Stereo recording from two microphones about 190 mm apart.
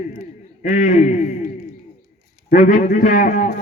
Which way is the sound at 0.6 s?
40° left (ahead or behind).